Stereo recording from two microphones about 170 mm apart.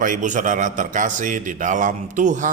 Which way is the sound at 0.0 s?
50° right (ahead or behind).